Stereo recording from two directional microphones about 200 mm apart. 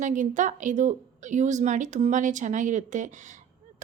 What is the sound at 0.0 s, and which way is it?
Speech, 40° right (ahead or behind).